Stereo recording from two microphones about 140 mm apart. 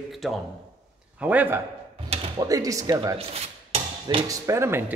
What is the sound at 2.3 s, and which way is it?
Speech, 25° right (ahead or behind).